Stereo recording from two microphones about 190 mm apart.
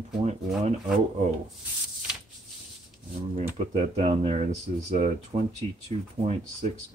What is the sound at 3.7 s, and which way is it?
Speech, 35° right (ahead or behind).